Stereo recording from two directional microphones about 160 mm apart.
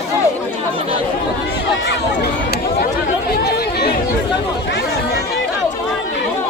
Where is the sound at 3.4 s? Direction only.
90° left.